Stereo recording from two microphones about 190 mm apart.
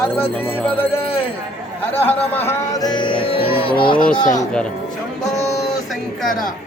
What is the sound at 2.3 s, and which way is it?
Speech, 10° left (ahead or behind).